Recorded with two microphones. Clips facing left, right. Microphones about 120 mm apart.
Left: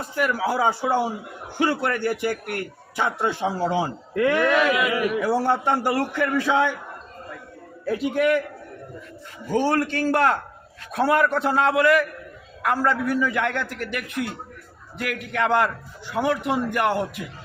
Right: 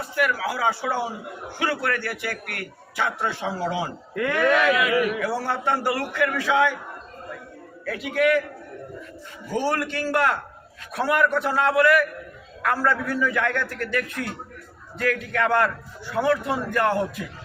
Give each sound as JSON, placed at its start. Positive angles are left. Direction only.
{"t": 0.3, "sound": "a man's voice", "side_deg": 20}
{"t": 4.1, "sound": "a man's voice", "side_deg": 0}
{"t": 5.9, "sound": "a man's voice", "side_deg": 35}
{"t": 7.9, "sound": "a man's voice", "side_deg": 25}
{"t": 9.6, "sound": "a man's voice", "side_deg": 30}